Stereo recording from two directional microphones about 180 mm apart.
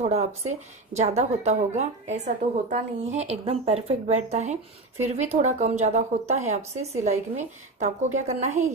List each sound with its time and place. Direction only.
0.0 s a woman's voice: 35° right (ahead or behind)